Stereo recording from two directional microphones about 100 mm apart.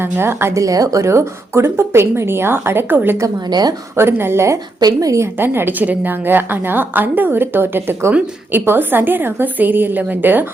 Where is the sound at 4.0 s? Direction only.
25° right (ahead or behind).